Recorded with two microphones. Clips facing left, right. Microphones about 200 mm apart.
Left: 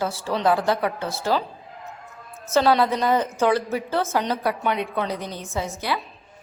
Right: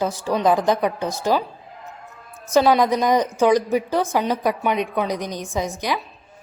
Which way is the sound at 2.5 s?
15° right (ahead or behind).